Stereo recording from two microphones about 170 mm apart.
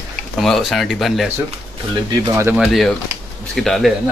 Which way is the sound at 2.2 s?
15° right (ahead or behind).